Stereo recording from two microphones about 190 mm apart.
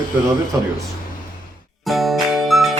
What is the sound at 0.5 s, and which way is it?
Speech, 15° right (ahead or behind).